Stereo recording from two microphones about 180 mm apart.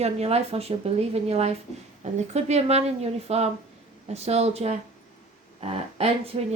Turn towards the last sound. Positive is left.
turn(degrees=-35)  # may be behind; listen again after turning